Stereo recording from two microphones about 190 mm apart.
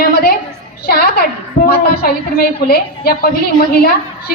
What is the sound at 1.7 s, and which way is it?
A woman's voice, 55° left (ahead or behind).